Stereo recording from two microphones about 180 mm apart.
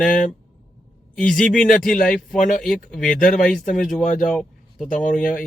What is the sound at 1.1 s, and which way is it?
Speech, 5° left (ahead or behind).